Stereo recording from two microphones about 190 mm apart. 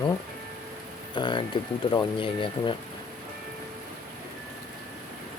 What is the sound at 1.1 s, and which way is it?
Speech, 25° left (ahead or behind).